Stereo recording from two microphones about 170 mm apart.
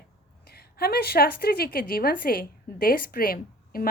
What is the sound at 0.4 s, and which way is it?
A woman's voice, 65° left (ahead or behind).